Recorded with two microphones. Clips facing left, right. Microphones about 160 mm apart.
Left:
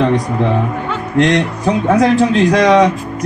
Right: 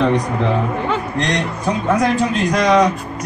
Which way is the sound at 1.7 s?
75° left (ahead or behind).